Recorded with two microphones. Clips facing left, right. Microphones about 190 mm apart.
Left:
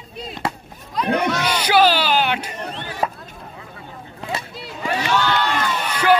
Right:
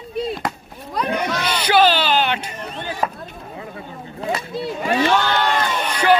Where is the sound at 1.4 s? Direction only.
10° left (ahead or behind).